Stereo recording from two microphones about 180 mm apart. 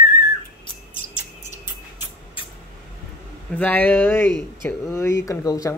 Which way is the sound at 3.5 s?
10° left (ahead or behind).